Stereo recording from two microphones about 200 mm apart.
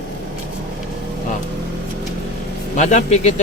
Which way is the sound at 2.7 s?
35° left (ahead or behind).